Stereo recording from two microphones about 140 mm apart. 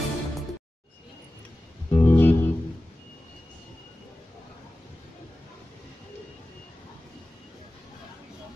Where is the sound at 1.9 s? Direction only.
20° left (ahead or behind).